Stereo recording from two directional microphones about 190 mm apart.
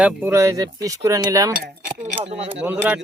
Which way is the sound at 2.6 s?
10° right (ahead or behind).